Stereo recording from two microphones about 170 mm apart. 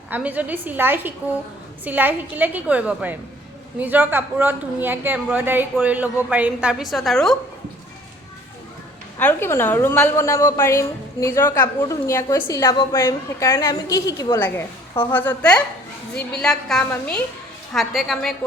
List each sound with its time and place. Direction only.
0.1 s a woman's voice: 10° right (ahead or behind)
9.1 s a woman's voice: 15° left (ahead or behind)